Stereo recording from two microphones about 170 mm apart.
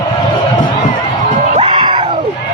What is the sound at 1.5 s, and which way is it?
Music, 30° right (ahead or behind).